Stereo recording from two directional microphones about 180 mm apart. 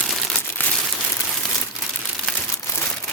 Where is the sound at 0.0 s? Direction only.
10° left (ahead or behind).